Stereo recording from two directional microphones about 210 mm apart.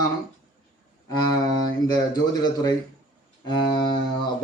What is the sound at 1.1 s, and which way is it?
Speech, 20° left (ahead or behind).